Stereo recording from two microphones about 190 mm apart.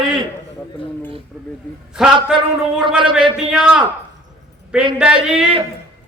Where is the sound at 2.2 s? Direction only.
5° right (ahead or behind).